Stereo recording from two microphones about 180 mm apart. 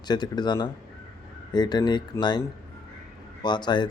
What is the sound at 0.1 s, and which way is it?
Speech, 25° left (ahead or behind).